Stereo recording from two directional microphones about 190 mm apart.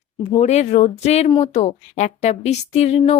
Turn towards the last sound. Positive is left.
turn(degrees=35)  # may be behind; listen again after turning